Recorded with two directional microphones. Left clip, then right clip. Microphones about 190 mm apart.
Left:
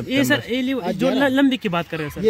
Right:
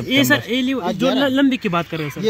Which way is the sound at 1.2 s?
15° left (ahead or behind).